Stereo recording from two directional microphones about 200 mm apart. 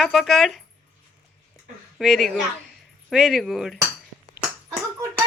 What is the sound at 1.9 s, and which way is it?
A woman's voice, centre (ahead or behind).